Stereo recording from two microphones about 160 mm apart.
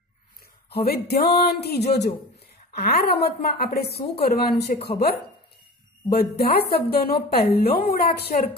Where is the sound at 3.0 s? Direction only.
80° left.